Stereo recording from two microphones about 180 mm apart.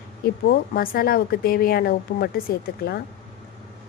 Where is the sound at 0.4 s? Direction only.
55° left (ahead or behind).